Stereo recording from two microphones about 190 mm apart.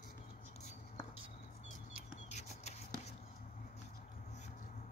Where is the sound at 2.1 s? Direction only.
35° left (ahead or behind).